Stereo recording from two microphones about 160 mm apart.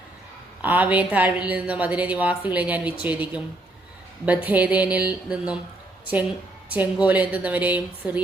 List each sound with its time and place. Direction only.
0.6 s a woman's voice: 10° right (ahead or behind)
6.7 s a woman's voice: 10° right (ahead or behind)